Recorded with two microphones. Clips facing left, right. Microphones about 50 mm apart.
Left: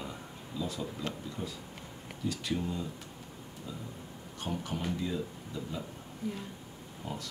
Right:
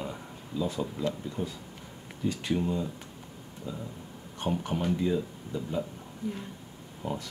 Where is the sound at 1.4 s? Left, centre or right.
Right.